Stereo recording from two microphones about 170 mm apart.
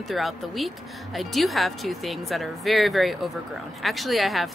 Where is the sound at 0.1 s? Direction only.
Centre (ahead or behind).